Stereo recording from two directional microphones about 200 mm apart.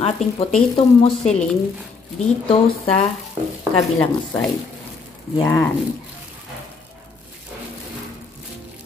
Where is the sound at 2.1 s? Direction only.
30° left (ahead or behind).